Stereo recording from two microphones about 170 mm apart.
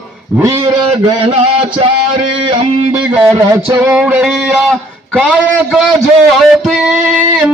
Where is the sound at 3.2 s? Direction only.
20° right (ahead or behind).